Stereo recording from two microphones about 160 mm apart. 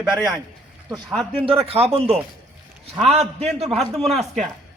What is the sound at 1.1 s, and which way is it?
Speech, 5° left (ahead or behind).